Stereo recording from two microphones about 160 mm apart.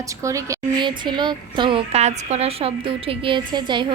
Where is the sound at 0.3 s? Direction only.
25° right (ahead or behind).